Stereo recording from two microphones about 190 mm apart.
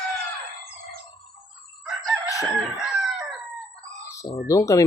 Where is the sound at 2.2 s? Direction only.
15° left (ahead or behind).